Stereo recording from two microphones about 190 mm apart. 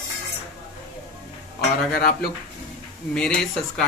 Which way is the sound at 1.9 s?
55° left (ahead or behind).